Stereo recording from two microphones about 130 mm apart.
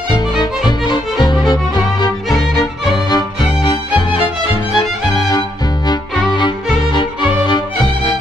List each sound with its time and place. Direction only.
0.4 s music: 35° left (ahead or behind)